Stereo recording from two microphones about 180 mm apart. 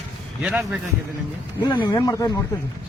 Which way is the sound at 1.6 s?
25° left (ahead or behind).